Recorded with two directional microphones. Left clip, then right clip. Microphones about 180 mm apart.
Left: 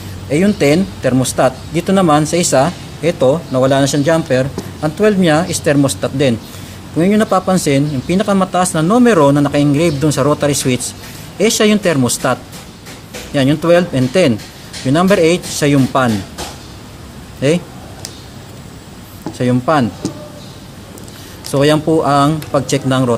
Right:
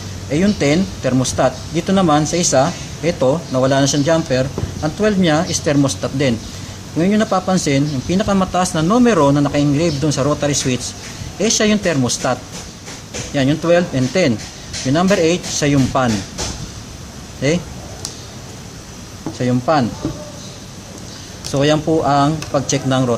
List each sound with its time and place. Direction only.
0.3 s speech: 20° left (ahead or behind)
19.3 s speech: 20° left (ahead or behind)
21.5 s speech: 20° left (ahead or behind)